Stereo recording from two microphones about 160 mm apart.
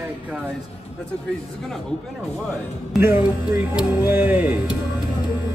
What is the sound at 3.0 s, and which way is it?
Speech, 15° right (ahead or behind).